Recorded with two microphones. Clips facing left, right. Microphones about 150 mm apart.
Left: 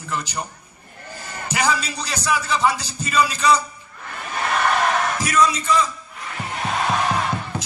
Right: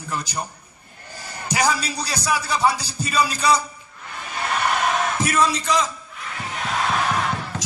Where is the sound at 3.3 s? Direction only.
10° right (ahead or behind).